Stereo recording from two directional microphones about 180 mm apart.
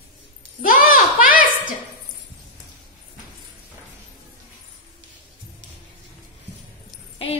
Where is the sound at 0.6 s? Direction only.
50° left (ahead or behind).